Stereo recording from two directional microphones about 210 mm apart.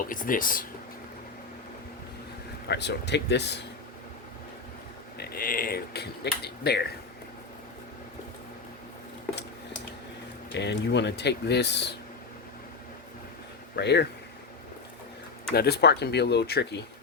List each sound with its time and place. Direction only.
0.0 s speech: 40° left (ahead or behind)
2.6 s speech: 55° left (ahead or behind)
5.1 s speech: 45° left (ahead or behind)
10.5 s speech: 55° left (ahead or behind)
13.7 s speech: 50° left (ahead or behind)
15.5 s speech: 50° left (ahead or behind)